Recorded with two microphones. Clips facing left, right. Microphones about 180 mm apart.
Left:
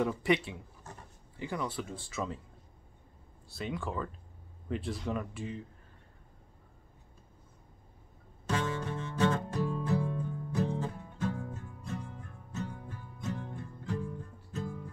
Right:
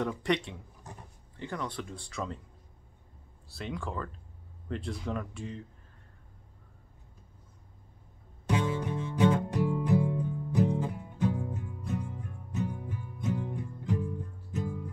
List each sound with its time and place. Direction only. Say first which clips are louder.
0.0 s speech: left 1 dB; 5° left (ahead or behind)
3.4 s speech: left 1 dB; centre (ahead or behind)
8.5 s music: right 3 dB; 15° right (ahead or behind)